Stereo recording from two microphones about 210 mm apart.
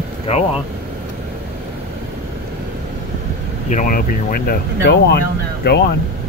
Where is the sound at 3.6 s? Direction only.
40° left (ahead or behind).